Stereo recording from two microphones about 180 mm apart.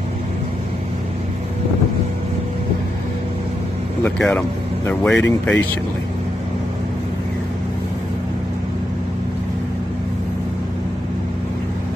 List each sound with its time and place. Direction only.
4.0 s speech: 5° left (ahead or behind)
5.2 s speech: 90° left